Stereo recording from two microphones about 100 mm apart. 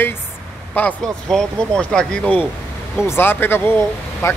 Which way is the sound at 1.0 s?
5° left (ahead or behind).